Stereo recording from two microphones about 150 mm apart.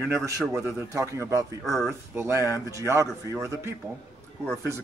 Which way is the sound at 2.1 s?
15° right (ahead or behind).